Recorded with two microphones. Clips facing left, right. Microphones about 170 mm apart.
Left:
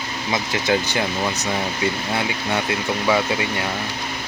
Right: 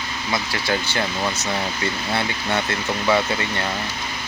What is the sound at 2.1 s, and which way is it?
Speech, 10° left (ahead or behind).